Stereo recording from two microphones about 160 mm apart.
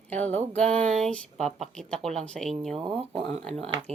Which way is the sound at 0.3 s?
10° left (ahead or behind).